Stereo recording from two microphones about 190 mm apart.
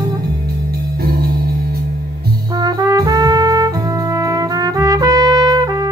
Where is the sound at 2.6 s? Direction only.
20° right (ahead or behind).